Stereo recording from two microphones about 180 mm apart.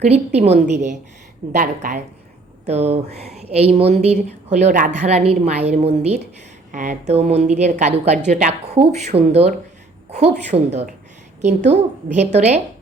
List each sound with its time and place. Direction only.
0.3 s a woman's voice: 35° right (ahead or behind)